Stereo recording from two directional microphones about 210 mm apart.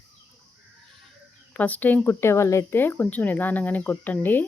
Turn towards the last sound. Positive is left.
turn(degrees=10)  # may be behind; listen again after turning